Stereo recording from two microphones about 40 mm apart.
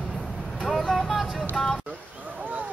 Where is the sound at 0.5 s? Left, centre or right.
Centre.